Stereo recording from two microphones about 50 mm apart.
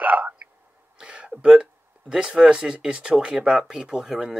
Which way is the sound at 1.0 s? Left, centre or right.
Right.